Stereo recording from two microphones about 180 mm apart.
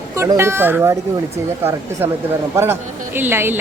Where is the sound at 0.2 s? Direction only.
15° right (ahead or behind).